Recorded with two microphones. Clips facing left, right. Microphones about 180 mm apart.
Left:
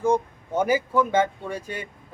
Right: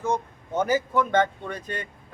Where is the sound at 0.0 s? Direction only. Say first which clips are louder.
Left 5 dB; 10° left (ahead or behind).